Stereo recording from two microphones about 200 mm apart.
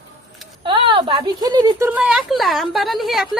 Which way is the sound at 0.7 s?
25° right (ahead or behind).